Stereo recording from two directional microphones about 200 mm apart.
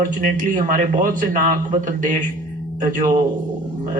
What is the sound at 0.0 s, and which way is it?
A man's voice, 40° right (ahead or behind).